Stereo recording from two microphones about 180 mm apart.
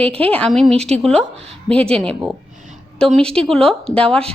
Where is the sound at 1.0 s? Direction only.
5° left (ahead or behind).